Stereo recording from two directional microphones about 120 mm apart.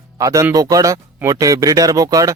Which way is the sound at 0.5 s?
30° right (ahead or behind).